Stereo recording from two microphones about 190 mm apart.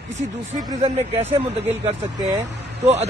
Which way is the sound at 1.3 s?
35° right (ahead or behind).